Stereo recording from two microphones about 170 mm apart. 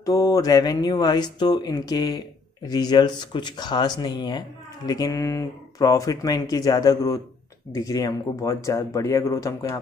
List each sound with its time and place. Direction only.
0.0 s speech: 20° left (ahead or behind)